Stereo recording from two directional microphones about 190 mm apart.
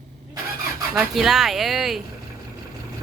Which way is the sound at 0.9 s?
Centre (ahead or behind).